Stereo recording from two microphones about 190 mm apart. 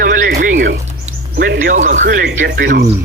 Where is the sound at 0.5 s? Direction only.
70° right (ahead or behind).